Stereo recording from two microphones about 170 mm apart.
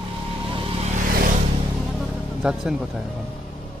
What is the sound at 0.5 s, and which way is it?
Music, 30° right (ahead or behind).